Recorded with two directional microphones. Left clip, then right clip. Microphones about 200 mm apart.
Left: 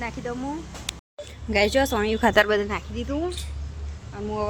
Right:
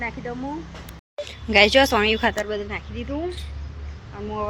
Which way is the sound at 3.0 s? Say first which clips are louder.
Left 1 dB; 25° left (ahead or behind).